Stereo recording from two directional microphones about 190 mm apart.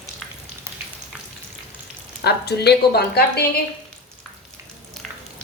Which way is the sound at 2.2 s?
60° left (ahead or behind).